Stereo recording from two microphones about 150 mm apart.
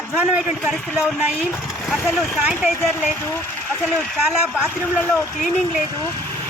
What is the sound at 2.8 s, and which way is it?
Speech, 15° left (ahead or behind).